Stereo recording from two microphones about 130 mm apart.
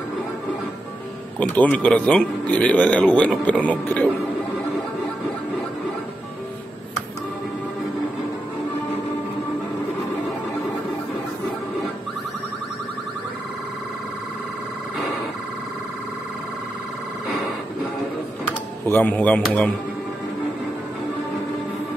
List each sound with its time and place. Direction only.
1.5 s a man's voice: 10° left (ahead or behind)
18.9 s a man's voice: 15° left (ahead or behind)